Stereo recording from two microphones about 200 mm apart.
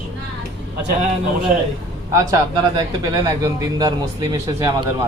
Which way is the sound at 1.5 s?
45° right (ahead or behind).